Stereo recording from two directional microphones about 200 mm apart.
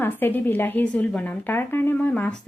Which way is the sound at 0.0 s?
10° left (ahead or behind).